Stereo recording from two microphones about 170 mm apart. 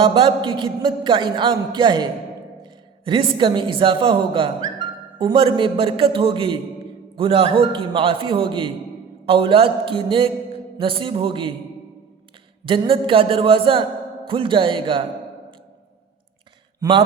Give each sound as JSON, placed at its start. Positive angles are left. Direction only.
{"t": 0.0, "sound": "a man's voice", "side_deg": -30}
{"t": 12.6, "sound": "a man's voice", "side_deg": -30}